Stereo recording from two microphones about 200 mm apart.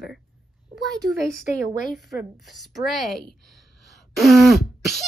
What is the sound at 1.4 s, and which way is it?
Speech, 40° left (ahead or behind).